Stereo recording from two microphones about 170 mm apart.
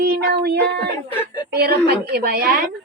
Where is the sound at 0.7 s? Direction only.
10° left (ahead or behind).